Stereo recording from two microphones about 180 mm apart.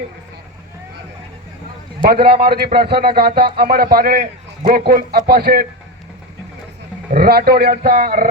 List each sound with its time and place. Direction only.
2.0 s a man's voice: 60° right (ahead or behind)
7.1 s a man's voice: 60° right (ahead or behind)